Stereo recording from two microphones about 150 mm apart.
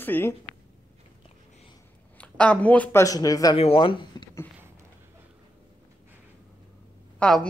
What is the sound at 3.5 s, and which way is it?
Speech, 40° left (ahead or behind).